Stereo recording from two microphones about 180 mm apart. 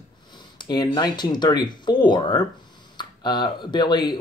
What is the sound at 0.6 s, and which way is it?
Speech, 25° left (ahead or behind).